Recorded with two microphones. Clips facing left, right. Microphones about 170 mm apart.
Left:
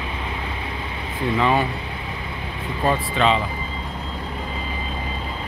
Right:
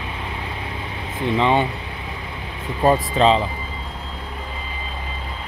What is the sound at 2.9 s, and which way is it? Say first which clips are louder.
Speech: right 4 dB; 35° right (ahead or behind).